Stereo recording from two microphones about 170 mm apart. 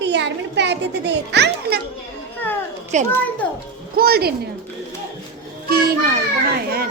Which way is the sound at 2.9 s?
45° right (ahead or behind).